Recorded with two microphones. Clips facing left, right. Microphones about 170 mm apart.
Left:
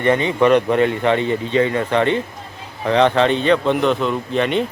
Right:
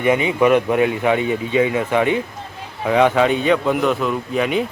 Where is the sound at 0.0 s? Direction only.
10° right (ahead or behind).